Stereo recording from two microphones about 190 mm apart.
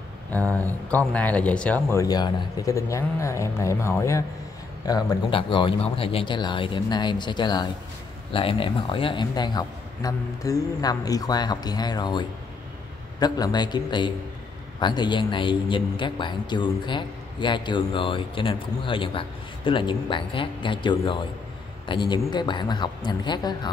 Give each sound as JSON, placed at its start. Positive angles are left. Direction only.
{"t": 0.3, "sound": "speech", "side_deg": 10}